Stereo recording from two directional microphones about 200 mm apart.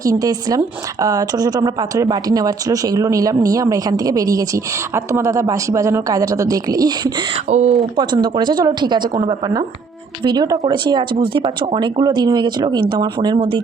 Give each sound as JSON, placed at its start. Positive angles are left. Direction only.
{"t": 0.0, "sound": "a woman's voice", "side_deg": -20}
{"t": 7.5, "sound": "speech", "side_deg": -35}
{"t": 7.9, "sound": "speech", "side_deg": -20}
{"t": 10.2, "sound": "speech", "side_deg": -20}